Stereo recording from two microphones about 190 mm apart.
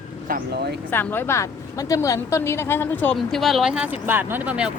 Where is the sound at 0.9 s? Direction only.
10° left (ahead or behind).